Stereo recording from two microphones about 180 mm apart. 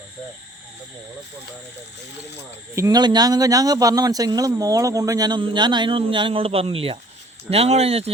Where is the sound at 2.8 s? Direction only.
20° right (ahead or behind).